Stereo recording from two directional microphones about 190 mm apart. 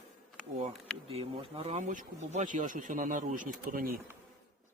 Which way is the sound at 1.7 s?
40° right (ahead or behind).